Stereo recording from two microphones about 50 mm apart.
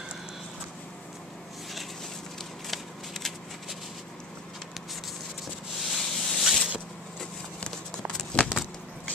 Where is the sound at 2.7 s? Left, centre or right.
Centre.